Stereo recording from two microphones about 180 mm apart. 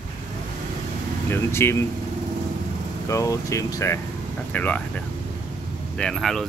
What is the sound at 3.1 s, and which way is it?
Speech, 15° left (ahead or behind).